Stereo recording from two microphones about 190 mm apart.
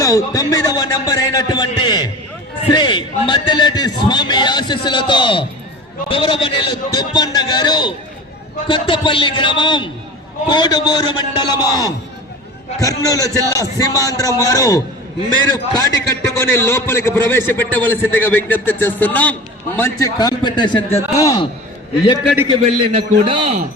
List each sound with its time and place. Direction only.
0.0 s a man's voice: 15° left (ahead or behind)
22.6 s a man's voice: 30° right (ahead or behind)